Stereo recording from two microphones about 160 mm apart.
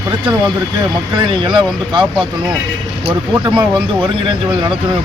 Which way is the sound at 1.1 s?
30° right (ahead or behind).